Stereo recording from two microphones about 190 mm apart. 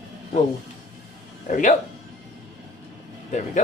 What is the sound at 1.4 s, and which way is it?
Speech, 45° left (ahead or behind).